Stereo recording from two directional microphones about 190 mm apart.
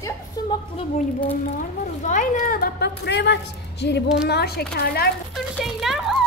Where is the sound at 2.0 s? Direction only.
40° left (ahead or behind).